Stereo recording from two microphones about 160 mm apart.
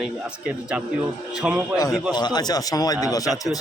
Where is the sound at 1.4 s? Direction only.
5° right (ahead or behind).